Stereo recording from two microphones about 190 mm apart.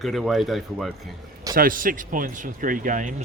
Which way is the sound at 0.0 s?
Centre (ahead or behind).